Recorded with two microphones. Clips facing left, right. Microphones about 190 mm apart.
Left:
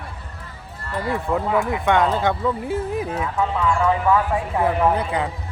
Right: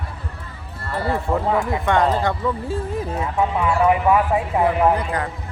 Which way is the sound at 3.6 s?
15° right (ahead or behind).